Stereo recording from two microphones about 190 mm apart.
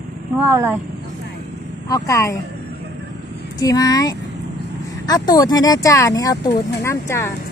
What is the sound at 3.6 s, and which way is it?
Speech, 20° left (ahead or behind).